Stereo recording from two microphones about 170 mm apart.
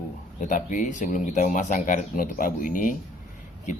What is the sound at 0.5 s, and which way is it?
Speech, 45° left (ahead or behind).